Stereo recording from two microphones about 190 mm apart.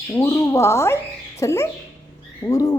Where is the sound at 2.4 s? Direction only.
20° left (ahead or behind).